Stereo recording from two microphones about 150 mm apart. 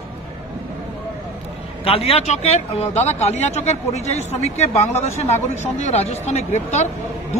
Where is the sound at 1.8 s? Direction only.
40° left (ahead or behind).